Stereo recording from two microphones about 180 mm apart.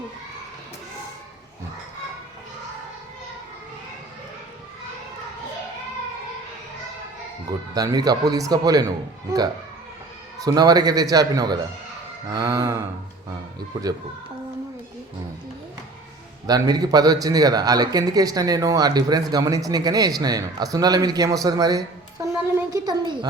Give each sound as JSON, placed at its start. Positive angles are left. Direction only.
{"t": 7.7, "sound": "speech", "side_deg": -20}
{"t": 10.3, "sound": "speech", "side_deg": -20}
{"t": 16.5, "sound": "speech", "side_deg": -20}
{"t": 22.5, "sound": "a sound", "side_deg": -20}